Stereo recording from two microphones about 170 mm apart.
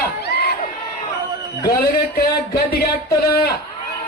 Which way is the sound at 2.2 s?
65° left (ahead or behind).